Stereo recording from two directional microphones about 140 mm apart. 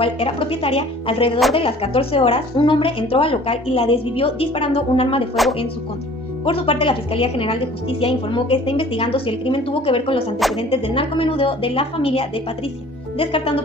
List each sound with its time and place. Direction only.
0.0 s speech: 40° left (ahead or behind)
5.3 s speech: centre (ahead or behind)
6.4 s a woman's voice: 40° left (ahead or behind)